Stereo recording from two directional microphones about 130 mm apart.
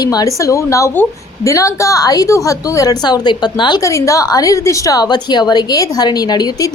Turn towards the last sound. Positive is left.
turn(degrees=30)  # may be behind; listen again after turning